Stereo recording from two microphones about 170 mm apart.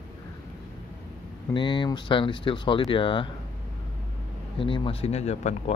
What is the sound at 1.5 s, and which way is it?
Speech, 25° left (ahead or behind).